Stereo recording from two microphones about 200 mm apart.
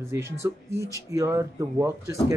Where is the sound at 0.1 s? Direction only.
15° right (ahead or behind).